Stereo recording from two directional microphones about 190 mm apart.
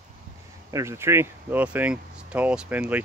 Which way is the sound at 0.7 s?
15° right (ahead or behind).